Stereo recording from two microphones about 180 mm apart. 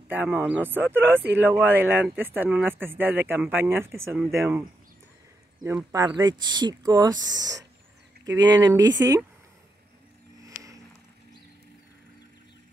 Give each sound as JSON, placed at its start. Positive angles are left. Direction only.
{"t": 0.1, "sound": "speech", "side_deg": -10}
{"t": 5.9, "sound": "speech", "side_deg": -25}
{"t": 10.4, "sound": "vehicle", "side_deg": -20}